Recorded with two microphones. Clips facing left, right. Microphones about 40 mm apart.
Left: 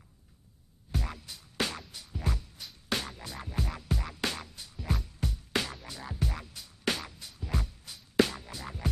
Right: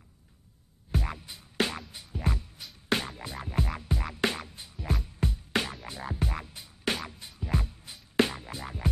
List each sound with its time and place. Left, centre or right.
0.9 s music: right
4.7 s music: centre
5.2 s music: right